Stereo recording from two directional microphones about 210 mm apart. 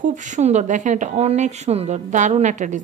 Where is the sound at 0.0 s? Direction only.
35° right (ahead or behind).